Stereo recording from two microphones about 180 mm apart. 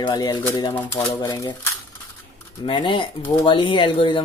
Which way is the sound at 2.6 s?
25° left (ahead or behind).